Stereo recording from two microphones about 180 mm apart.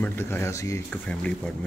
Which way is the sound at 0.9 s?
5° left (ahead or behind).